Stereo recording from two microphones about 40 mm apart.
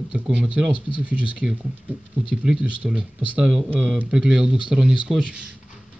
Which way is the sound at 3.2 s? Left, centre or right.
Right.